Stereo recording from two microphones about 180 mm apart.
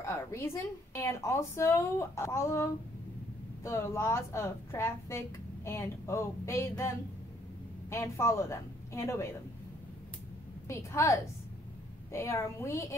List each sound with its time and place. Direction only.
0.0 s a woman's voice: 15° left (ahead or behind)
7.9 s a woman's voice: 15° left (ahead or behind)
10.7 s a woman's voice: 15° left (ahead or behind)